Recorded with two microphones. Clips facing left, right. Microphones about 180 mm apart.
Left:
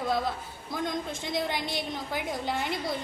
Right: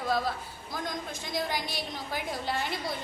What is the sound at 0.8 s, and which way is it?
A woman's voice, 25° left (ahead or behind).